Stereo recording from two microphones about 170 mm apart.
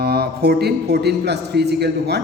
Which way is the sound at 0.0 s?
70° right (ahead or behind).